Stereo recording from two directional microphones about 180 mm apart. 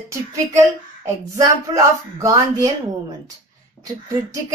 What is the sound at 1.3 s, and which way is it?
Speech, 20° right (ahead or behind).